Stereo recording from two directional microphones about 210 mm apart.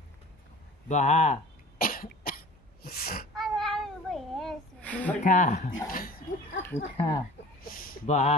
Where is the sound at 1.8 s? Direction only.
45° left (ahead or behind).